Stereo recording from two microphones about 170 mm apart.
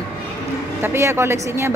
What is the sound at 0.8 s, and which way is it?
Speech, 15° right (ahead or behind).